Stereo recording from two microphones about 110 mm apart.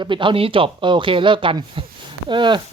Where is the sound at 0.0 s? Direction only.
50° right (ahead or behind).